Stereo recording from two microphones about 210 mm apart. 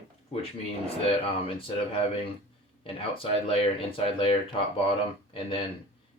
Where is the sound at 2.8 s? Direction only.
25° left (ahead or behind).